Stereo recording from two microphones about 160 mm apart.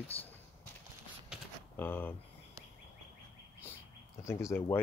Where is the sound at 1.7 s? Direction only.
10° left (ahead or behind).